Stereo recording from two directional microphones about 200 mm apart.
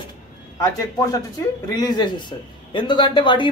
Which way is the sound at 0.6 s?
15° left (ahead or behind).